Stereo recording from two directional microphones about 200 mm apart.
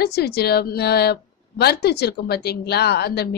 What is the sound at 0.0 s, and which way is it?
A woman's voice, 55° left (ahead or behind).